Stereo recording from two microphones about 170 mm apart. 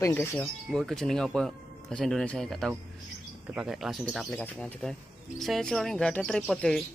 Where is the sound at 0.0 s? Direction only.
15° left (ahead or behind).